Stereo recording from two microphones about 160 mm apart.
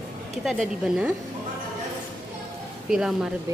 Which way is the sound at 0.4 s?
5° right (ahead or behind).